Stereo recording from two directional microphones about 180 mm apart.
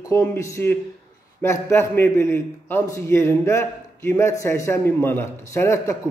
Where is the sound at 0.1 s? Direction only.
15° left (ahead or behind).